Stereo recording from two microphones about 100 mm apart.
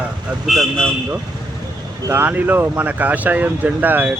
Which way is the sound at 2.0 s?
20° right (ahead or behind).